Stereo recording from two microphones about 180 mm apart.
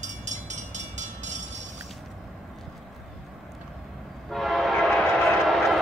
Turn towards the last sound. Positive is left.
turn(degrees=0)  # may be behind; listen again after turning